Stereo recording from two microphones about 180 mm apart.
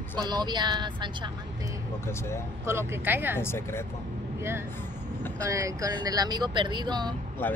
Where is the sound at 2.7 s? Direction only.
15° right (ahead or behind).